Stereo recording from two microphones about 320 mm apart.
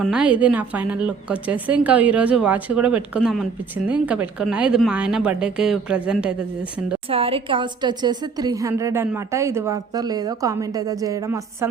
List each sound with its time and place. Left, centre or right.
0.0 s a woman's voice: centre
7.1 s a woman's voice: centre